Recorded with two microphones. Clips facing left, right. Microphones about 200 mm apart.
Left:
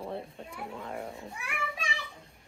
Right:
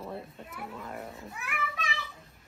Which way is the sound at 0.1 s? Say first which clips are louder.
Left 2 dB; 25° left (ahead or behind).